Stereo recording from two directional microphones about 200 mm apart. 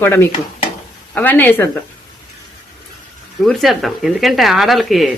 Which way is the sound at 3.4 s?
Centre (ahead or behind).